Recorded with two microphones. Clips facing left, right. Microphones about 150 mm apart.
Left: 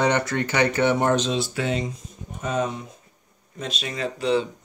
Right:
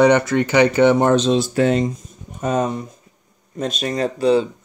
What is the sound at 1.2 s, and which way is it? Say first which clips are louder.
Speech: right 9 dB; 45° right (ahead or behind).